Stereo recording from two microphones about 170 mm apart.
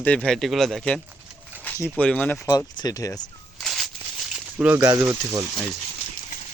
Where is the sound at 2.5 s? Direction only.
20° left (ahead or behind).